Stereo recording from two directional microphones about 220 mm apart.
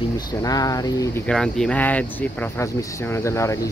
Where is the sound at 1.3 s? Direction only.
5° left (ahead or behind).